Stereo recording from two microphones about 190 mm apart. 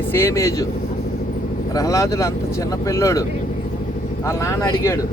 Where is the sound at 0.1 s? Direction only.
15° left (ahead or behind).